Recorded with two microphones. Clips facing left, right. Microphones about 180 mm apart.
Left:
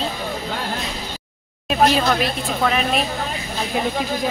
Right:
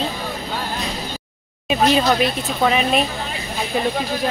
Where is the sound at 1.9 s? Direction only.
Centre (ahead or behind).